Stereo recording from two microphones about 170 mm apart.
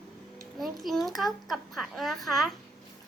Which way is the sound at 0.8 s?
Centre (ahead or behind).